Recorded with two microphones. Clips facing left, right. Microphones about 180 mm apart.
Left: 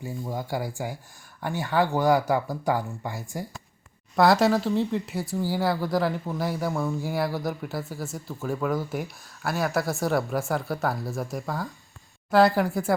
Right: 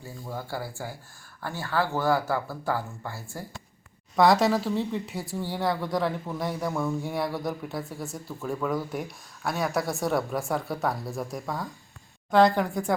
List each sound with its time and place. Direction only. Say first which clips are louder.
0.0 s speech: left 5 dB; 15° left (ahead or behind)
4.1 s speech: left 1 dB; centre (ahead or behind)